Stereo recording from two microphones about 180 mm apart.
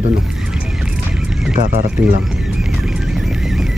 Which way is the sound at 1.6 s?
45° right (ahead or behind).